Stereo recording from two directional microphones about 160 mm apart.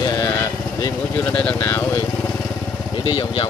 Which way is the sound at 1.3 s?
10° left (ahead or behind).